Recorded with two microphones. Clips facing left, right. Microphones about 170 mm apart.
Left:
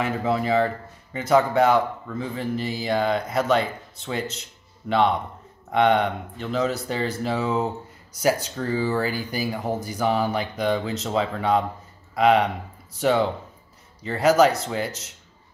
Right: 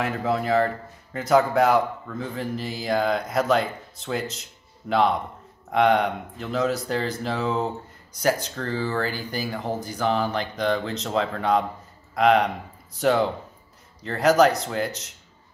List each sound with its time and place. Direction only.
0.0 s a man's voice: centre (ahead or behind)